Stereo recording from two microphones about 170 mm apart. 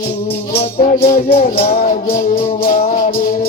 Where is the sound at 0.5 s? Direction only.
35° left (ahead or behind).